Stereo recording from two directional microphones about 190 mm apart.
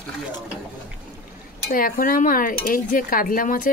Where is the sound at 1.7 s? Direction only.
50° left (ahead or behind).